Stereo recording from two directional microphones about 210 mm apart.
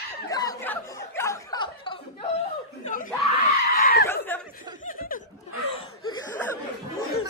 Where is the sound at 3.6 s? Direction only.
45° left (ahead or behind).